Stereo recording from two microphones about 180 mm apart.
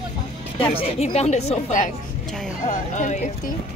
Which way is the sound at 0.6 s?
30° left (ahead or behind).